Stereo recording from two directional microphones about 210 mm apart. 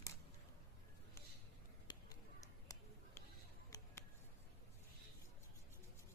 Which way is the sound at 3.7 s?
15° left (ahead or behind).